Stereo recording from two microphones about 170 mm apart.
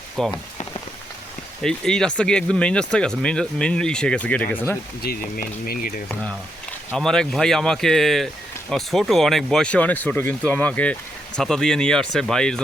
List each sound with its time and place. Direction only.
0.2 s speech: 5° left (ahead or behind)
1.6 s speech: 5° left (ahead or behind)
5.0 s speech: 55° left (ahead or behind)
6.9 s speech: 5° left (ahead or behind)